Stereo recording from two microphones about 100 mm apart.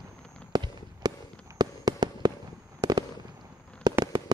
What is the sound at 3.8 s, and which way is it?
Fireworks, 40° right (ahead or behind).